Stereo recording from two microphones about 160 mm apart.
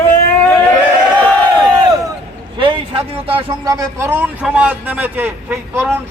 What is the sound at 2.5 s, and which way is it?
Speech, 35° right (ahead or behind).